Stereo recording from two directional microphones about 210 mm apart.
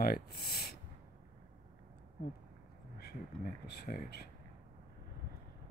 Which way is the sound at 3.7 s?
50° left (ahead or behind).